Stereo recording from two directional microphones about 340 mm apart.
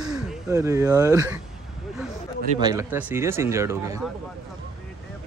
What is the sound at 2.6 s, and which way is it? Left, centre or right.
Speech, centre.